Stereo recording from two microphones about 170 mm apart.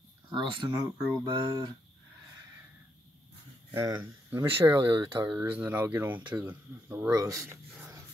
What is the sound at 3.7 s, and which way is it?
Speech, 15° right (ahead or behind).